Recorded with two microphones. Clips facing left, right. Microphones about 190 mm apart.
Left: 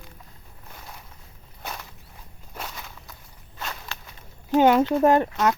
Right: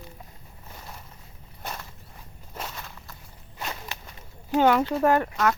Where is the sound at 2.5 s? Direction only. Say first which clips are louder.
Even; 5° right (ahead or behind).